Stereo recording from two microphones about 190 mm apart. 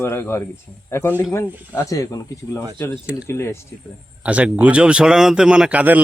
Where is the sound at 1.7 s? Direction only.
15° left (ahead or behind).